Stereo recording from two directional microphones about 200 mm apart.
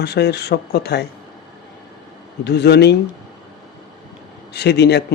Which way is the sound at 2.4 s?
55° left (ahead or behind).